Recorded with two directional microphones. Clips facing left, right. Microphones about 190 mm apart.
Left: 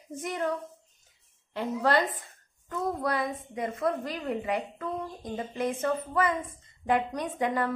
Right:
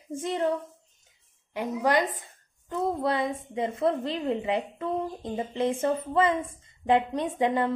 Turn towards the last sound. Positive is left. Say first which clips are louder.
# right 3 dB
turn(degrees=-25)  # may be behind; listen again after turning